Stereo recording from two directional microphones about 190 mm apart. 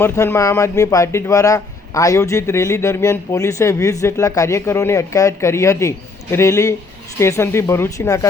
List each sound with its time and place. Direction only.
0.0 s speech: 15° left (ahead or behind)